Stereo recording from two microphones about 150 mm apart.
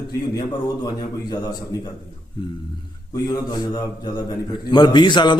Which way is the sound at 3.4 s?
30° left (ahead or behind).